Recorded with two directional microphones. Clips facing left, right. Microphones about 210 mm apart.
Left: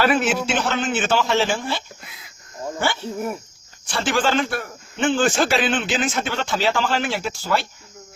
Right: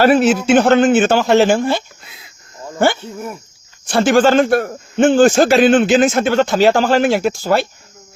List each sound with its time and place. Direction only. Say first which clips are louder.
0.0 s a man's voice: right 8 dB; 40° right (ahead or behind)
0.4 s a man's voice: right 12 dB; 55° right (ahead or behind)